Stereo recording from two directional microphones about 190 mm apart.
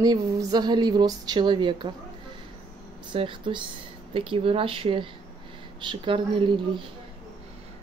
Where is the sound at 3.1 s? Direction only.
25° right (ahead or behind).